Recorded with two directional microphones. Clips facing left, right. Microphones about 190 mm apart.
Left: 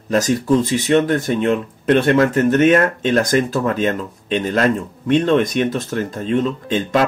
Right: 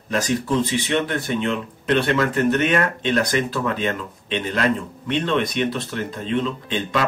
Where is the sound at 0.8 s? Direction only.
45° left (ahead or behind).